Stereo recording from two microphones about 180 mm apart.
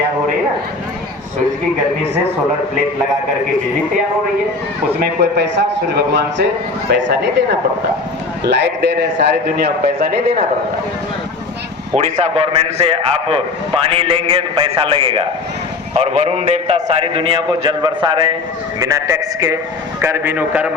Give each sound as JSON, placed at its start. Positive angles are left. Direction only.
{"t": 4.9, "sound": "a man's voice", "side_deg": -65}
{"t": 8.4, "sound": "a man's voice", "side_deg": -70}
{"t": 11.9, "sound": "a man's voice", "side_deg": -40}